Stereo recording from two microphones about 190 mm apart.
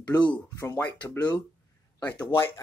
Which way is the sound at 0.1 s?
20° left (ahead or behind).